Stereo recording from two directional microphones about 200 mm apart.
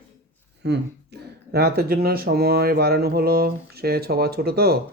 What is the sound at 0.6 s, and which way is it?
Speech, 55° right (ahead or behind).